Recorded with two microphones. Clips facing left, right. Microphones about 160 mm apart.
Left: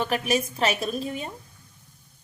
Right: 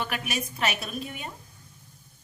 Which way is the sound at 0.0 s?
30° left (ahead or behind).